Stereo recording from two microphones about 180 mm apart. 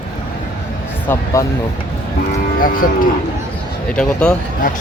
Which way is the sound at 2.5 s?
50° left (ahead or behind).